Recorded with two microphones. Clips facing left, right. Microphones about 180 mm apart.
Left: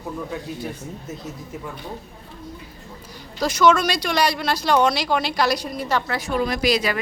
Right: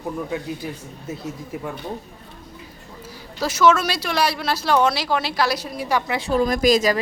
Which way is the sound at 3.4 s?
5° right (ahead or behind).